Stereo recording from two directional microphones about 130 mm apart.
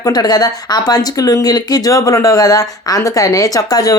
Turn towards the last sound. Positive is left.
turn(degrees=30)  # may be behind; listen again after turning